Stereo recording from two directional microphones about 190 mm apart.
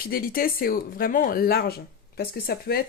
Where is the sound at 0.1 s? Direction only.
50° left (ahead or behind).